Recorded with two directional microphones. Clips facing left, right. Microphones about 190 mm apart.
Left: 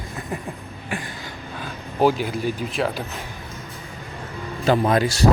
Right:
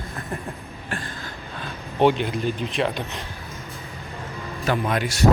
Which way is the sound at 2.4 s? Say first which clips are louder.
Left 1 dB; 5° left (ahead or behind).